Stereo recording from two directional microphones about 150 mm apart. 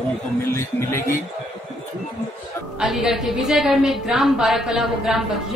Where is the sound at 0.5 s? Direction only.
15° left (ahead or behind).